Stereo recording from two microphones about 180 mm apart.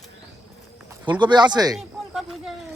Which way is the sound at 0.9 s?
25° right (ahead or behind).